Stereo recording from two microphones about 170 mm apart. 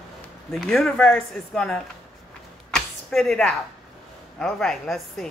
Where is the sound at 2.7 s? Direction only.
Centre (ahead or behind).